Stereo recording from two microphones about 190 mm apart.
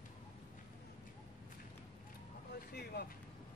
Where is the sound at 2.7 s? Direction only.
55° left (ahead or behind).